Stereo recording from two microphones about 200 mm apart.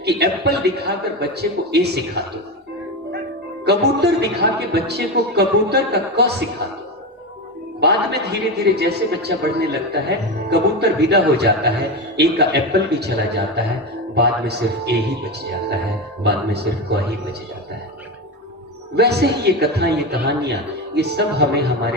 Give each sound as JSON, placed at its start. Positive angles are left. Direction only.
{"t": 0.0, "sound": "a man's voice", "side_deg": -55}
{"t": 3.7, "sound": "a man's voice", "side_deg": -55}
{"t": 7.8, "sound": "a man's voice", "side_deg": -55}
{"t": 16.2, "sound": "a man's voice", "side_deg": -55}
{"t": 18.9, "sound": "a man's voice", "side_deg": -55}